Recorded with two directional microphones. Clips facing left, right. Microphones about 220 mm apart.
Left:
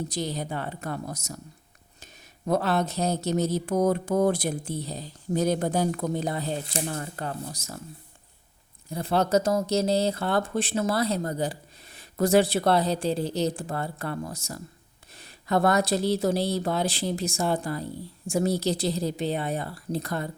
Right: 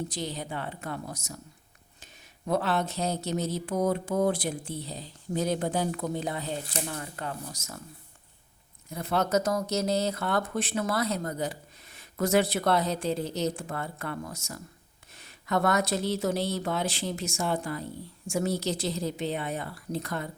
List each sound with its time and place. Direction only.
0.1 s speech: 40° left (ahead or behind)
2.5 s speech: 40° left (ahead or behind)
8.9 s speech: 30° left (ahead or behind)